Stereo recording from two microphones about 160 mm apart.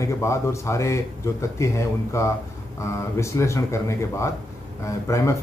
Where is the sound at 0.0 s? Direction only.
20° left (ahead or behind).